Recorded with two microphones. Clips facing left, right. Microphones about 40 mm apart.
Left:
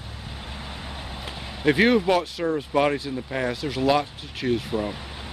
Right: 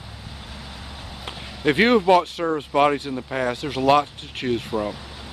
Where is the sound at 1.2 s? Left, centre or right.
Centre.